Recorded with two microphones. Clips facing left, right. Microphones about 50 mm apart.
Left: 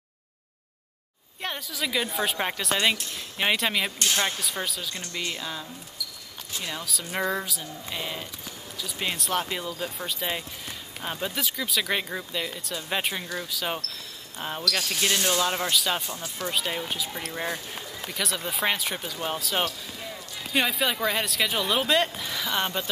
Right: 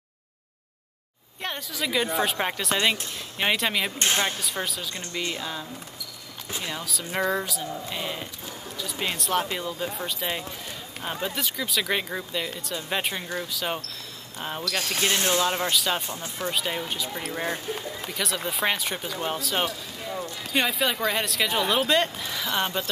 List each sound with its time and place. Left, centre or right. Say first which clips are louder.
1.4 s speech: right 1 dB; centre
14.6 s speech: even; right
15.7 s speech: right 1 dB; centre